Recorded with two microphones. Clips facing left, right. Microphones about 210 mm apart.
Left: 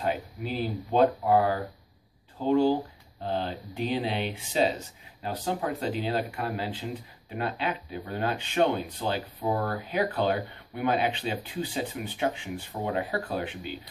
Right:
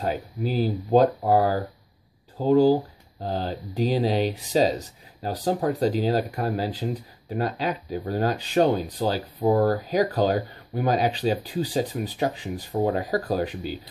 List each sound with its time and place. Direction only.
0.0 s speech: 40° right (ahead or behind)